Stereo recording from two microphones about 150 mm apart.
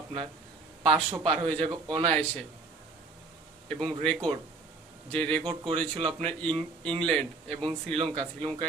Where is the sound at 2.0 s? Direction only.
5° left (ahead or behind).